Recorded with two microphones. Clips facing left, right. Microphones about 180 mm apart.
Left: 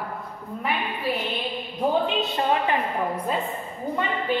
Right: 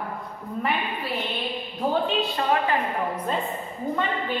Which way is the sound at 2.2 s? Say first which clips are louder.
Even; 20° left (ahead or behind).